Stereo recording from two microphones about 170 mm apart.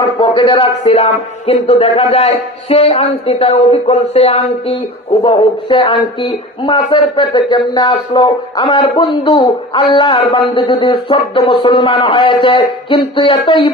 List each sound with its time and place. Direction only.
0.2 s a man's voice: 30° left (ahead or behind)